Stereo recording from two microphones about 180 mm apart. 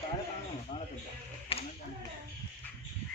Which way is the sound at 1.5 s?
30° left (ahead or behind).